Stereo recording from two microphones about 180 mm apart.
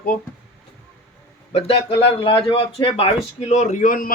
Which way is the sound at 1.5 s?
30° left (ahead or behind).